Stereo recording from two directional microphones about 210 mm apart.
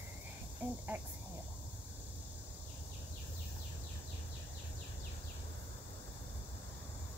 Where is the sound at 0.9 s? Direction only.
10° right (ahead or behind).